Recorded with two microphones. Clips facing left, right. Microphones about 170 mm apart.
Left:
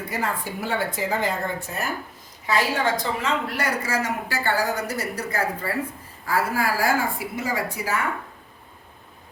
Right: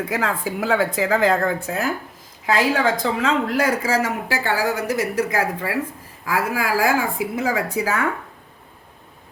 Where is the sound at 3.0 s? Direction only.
90° right.